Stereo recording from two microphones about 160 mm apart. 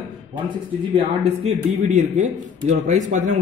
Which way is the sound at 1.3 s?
45° right (ahead or behind).